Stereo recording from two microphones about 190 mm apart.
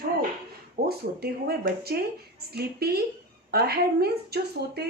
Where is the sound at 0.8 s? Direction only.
55° right (ahead or behind).